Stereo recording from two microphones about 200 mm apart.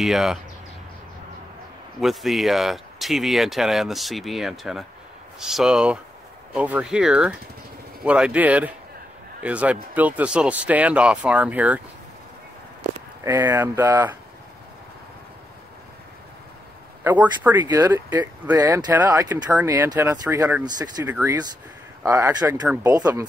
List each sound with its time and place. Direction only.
0.0 s speech: centre (ahead or behind)
2.0 s speech: centre (ahead or behind)
13.2 s speech: 10° right (ahead or behind)
17.0 s speech: 10° right (ahead or behind)